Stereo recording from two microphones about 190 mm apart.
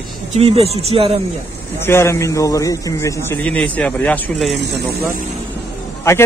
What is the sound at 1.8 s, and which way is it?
A man's voice, 15° left (ahead or behind).